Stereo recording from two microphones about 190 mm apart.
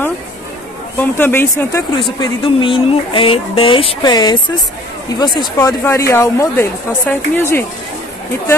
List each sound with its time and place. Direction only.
0.9 s speech: 10° left (ahead or behind)
2.1 s speech: 25° left (ahead or behind)